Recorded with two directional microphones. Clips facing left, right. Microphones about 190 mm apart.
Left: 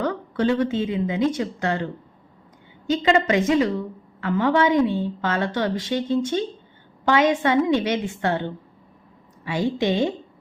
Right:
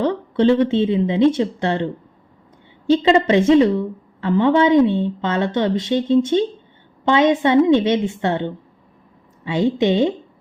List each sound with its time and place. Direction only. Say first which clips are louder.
0.0 s a woman's voice: right 6 dB; 25° right (ahead or behind)